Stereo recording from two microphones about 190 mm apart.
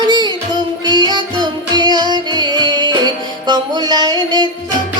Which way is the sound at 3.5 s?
20° right (ahead or behind).